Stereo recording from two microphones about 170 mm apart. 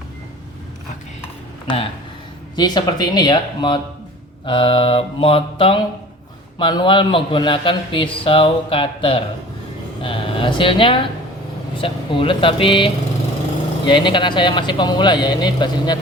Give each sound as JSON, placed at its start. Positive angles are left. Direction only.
{"t": 1.6, "sound": "a man's voice", "side_deg": 30}
{"t": 4.4, "sound": "mantra", "side_deg": 30}
{"t": 6.6, "sound": "a man's voice", "side_deg": 30}
{"t": 10.0, "sound": "mantra", "side_deg": 30}
{"t": 11.8, "sound": "a man's voice", "side_deg": 30}